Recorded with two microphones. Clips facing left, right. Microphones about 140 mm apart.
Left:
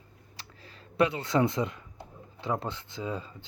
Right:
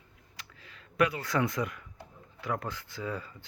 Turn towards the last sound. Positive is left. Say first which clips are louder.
# left 2 dB
turn(degrees=20)  # may be behind; listen again after turning